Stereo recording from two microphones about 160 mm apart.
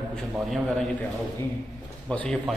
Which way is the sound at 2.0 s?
5° left (ahead or behind).